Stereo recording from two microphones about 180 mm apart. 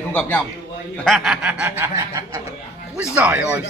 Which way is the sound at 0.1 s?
10° left (ahead or behind).